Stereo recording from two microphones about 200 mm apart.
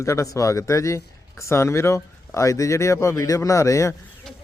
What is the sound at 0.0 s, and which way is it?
A man's voice, 15° left (ahead or behind).